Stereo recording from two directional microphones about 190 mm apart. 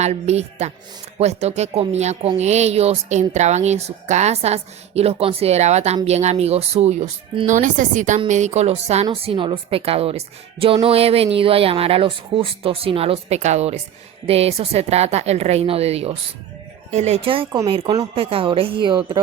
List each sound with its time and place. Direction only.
0.0 s a woman's voice: 35° right (ahead or behind)